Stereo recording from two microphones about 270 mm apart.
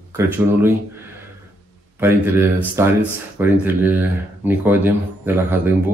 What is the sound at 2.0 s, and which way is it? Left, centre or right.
A man's voice, centre.